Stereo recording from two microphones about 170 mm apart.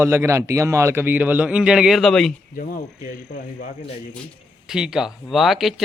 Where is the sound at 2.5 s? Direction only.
55° left (ahead or behind).